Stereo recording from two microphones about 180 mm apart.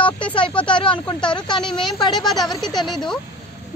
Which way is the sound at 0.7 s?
30° left (ahead or behind).